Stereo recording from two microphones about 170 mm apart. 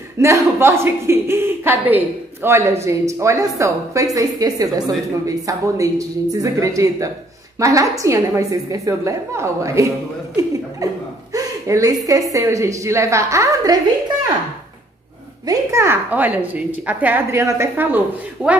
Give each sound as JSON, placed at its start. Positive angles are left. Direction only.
{"t": 0.2, "sound": "a woman's voice", "side_deg": -15}
{"t": 15.4, "sound": "a woman's voice", "side_deg": -15}